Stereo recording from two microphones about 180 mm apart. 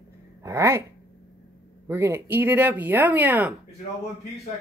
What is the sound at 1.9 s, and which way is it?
Speech, 15° right (ahead or behind).